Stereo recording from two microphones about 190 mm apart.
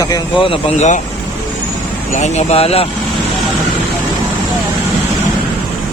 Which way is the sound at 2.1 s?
35° left (ahead or behind).